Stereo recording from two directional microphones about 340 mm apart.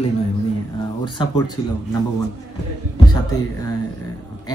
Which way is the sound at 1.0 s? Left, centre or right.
Centre.